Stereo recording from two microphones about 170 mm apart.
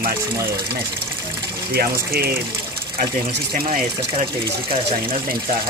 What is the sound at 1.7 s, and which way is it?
Speech, 65° right (ahead or behind).